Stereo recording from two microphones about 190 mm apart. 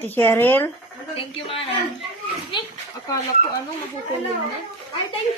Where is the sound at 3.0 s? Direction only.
20° left (ahead or behind).